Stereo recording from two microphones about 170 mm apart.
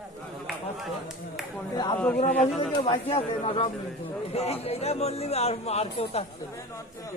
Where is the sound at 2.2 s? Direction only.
5° left (ahead or behind).